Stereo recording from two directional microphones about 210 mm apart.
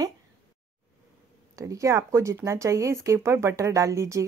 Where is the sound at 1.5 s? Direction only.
15° right (ahead or behind).